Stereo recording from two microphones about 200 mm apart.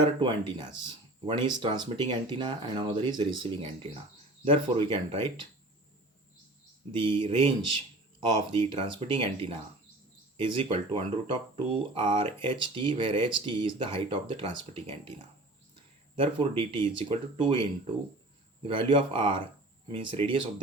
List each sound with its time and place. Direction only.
0.0 s speech: 25° right (ahead or behind)
6.9 s speech: 25° right (ahead or behind)
16.1 s speech: 25° right (ahead or behind)
18.7 s speech: 25° right (ahead or behind)